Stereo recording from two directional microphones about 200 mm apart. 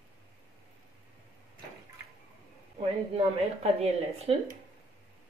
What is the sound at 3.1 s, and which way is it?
Speech, 30° right (ahead or behind).